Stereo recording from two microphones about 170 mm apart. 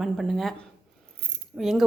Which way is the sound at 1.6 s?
Centre (ahead or behind).